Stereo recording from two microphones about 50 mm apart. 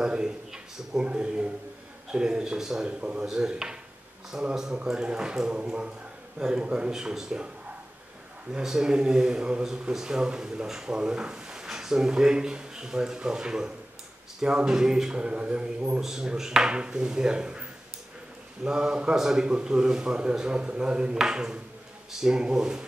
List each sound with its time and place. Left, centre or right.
0.0 s a sound: centre
1.0 s speech: right; by 4.5 s centre
4.7 s speech: centre
8.6 s speech: centre
16.0 s speech: centre